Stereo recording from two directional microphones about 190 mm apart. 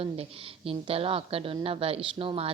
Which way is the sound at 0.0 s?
30° right (ahead or behind).